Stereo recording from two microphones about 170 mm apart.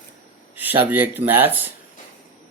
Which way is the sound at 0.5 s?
10° right (ahead or behind).